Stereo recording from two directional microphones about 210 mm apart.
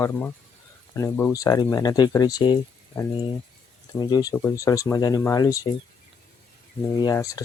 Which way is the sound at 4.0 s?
20° left (ahead or behind).